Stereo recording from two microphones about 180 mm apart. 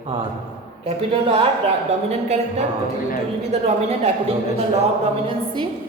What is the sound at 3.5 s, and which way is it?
A man's voice, 35° right (ahead or behind).